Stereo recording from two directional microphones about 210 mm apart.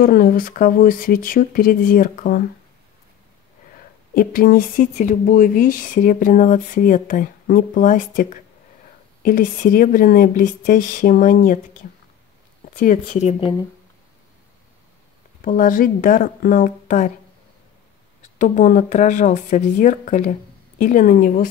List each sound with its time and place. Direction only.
0.0 s speech: 45° left (ahead or behind)
4.1 s speech: 40° left (ahead or behind)
12.7 s speech: 40° left (ahead or behind)
15.4 s speech: 40° left (ahead or behind)
18.4 s speech: 35° left (ahead or behind)